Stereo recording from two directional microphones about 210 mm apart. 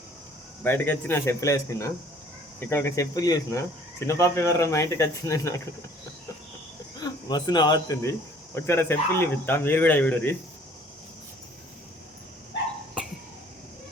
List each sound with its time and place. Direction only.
0.6 s speech: 10° left (ahead or behind)
7.0 s speech: 20° left (ahead or behind)